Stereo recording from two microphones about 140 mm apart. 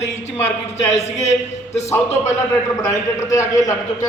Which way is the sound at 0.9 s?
50° left (ahead or behind).